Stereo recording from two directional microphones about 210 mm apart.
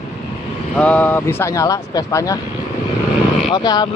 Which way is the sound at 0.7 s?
5° left (ahead or behind).